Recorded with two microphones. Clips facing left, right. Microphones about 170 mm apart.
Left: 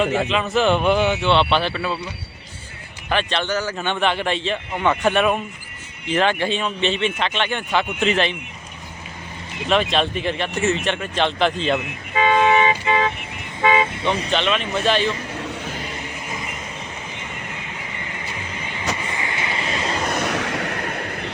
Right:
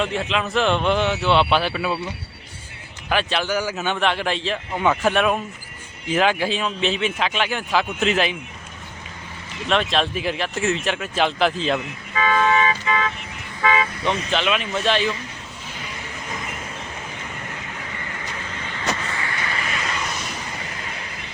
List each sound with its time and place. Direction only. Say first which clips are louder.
0.3 s a man's voice: left 2 dB; centre (ahead or behind)
3.1 s a man's voice: even; 5° right (ahead or behind)
9.6 s a man's voice: left 2 dB; centre (ahead or behind)
12.1 s toot: left 3 dB; 25° left (ahead or behind)
14.3 s a man's voice: left 1 dB; 5° right (ahead or behind)
15.4 s vehicle: left 10 dB; 70° left (ahead or behind)
16.3 s vehicle: right 1 dB; 5° left (ahead or behind)
18.1 s vehicle: left 1 dB; 15° left (ahead or behind)
20.0 s vehicle: left 7 dB; 55° left (ahead or behind)